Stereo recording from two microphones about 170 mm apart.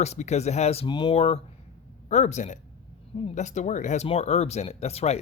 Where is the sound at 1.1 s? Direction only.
40° left (ahead or behind).